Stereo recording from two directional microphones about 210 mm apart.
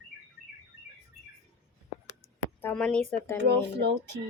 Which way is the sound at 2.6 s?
5° left (ahead or behind).